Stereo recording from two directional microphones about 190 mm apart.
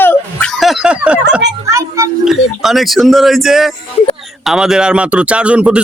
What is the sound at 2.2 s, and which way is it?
A man's voice, centre (ahead or behind).